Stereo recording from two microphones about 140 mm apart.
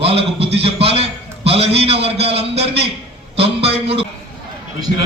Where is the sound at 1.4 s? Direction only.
45° right (ahead or behind).